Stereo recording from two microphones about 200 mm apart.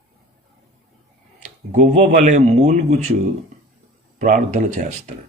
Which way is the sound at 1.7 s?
35° right (ahead or behind).